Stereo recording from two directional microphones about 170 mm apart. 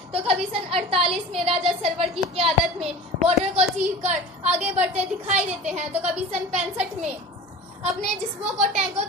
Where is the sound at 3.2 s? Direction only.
40° right (ahead or behind).